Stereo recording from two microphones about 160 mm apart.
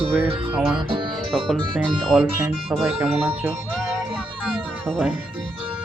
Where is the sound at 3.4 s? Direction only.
15° right (ahead or behind).